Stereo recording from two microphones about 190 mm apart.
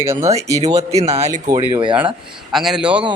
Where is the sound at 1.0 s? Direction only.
35° right (ahead or behind).